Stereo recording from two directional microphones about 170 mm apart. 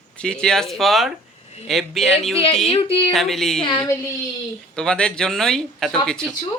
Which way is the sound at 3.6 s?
25° left (ahead or behind).